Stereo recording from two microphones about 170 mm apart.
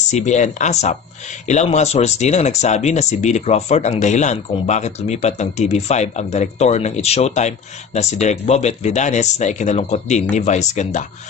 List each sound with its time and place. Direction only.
0.1 s speech: 45° left (ahead or behind)